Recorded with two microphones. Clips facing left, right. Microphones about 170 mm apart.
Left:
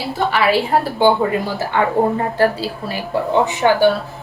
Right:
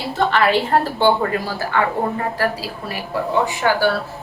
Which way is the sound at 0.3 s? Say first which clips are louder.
Left 2 dB; 10° left (ahead or behind).